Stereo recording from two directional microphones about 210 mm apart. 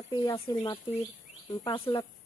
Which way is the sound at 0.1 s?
20° left (ahead or behind).